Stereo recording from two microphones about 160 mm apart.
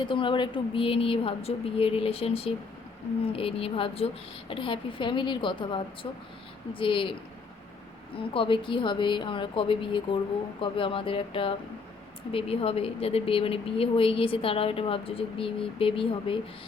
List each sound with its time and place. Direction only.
0.0 s a woman's voice: 30° left (ahead or behind)
8.1 s a woman's voice: 35° left (ahead or behind)